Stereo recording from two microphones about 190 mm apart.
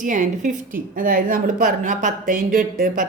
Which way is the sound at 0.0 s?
40° right (ahead or behind).